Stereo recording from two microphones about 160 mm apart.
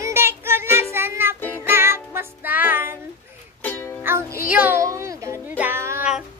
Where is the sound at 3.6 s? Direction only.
10° left (ahead or behind).